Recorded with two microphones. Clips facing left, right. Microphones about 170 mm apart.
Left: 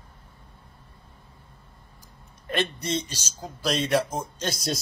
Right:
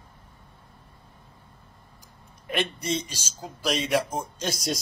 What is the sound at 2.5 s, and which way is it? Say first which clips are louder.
A man's voice: even; 10° right (ahead or behind).